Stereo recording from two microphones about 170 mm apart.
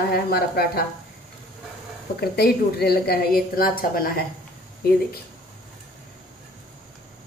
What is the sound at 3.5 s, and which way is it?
Speech, 60° left (ahead or behind).